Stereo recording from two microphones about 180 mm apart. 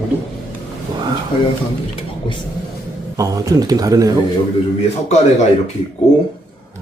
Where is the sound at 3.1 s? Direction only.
20° right (ahead or behind).